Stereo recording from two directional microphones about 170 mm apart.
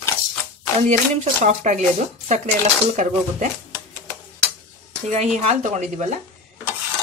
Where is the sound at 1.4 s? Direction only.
45° right (ahead or behind).